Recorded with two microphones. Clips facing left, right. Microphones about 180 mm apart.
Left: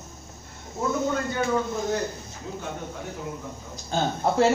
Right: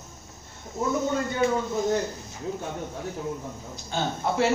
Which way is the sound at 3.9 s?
35° left (ahead or behind).